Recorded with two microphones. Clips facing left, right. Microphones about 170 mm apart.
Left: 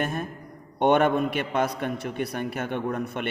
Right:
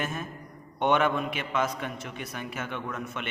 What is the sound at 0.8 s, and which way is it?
A man's voice, 50° left (ahead or behind).